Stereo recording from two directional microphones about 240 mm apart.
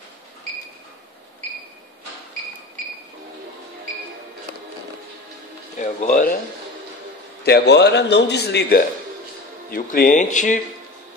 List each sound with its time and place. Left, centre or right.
5.8 s speech: left
7.4 s a man's voice: left